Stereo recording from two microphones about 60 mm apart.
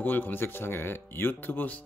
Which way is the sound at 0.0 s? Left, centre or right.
Left.